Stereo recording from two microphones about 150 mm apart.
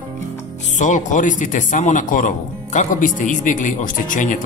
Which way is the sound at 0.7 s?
55° left (ahead or behind).